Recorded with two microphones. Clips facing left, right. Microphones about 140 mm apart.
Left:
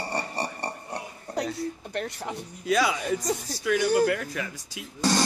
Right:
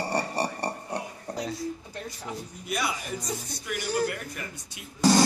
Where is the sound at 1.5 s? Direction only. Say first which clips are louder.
Left 3 dB; 70° left (ahead or behind); by 4.8 s 90° left.